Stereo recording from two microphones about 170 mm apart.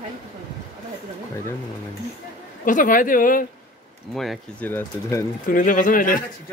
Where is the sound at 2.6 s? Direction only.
50° left (ahead or behind).